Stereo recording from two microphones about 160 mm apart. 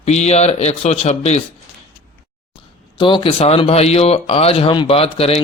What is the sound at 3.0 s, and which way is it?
Speech, 30° left (ahead or behind).